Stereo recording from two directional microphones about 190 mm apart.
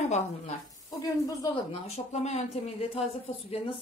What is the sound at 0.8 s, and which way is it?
Speech, 20° left (ahead or behind).